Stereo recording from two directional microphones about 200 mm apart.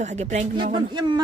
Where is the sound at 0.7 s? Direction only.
25° right (ahead or behind).